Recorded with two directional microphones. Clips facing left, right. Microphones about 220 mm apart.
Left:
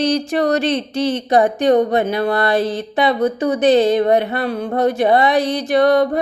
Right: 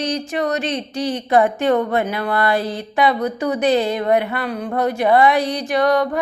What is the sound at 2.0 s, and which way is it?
Speech, 35° left (ahead or behind).